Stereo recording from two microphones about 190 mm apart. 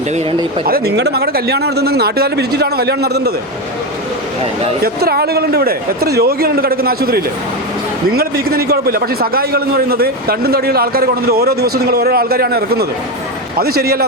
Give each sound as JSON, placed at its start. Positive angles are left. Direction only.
{"t": 0.6, "sound": "speech", "side_deg": -55}
{"t": 4.8, "sound": "a man's voice", "side_deg": -55}